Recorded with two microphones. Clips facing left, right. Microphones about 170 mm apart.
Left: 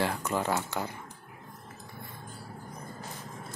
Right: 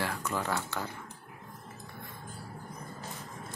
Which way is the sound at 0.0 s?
20° left (ahead or behind).